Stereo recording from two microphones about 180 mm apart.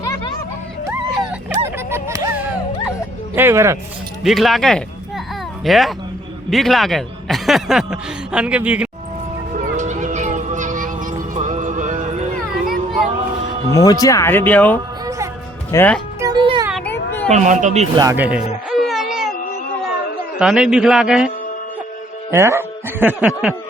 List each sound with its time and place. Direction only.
0.0 s a sound: 20° left (ahead or behind)
1.9 s music: 15° right (ahead or behind)
3.3 s speech: 15° right (ahead or behind)
4.2 s speech: centre (ahead or behind)
9.6 s music: 45° right (ahead or behind)
13.7 s speech: 20° left (ahead or behind)
16.2 s music: 25° right (ahead or behind)
16.8 s children playing: 10° left (ahead or behind)
17.2 s speech: 40° right (ahead or behind)
17.9 s a man's voice: 20° right (ahead or behind)
18.2 s baby cry: 5° right (ahead or behind)
20.4 s speech: 5° right (ahead or behind)
22.3 s speech: 15° right (ahead or behind)
23.2 s speech: centre (ahead or behind)